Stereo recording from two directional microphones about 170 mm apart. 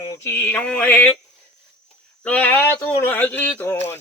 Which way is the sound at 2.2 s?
10° left (ahead or behind).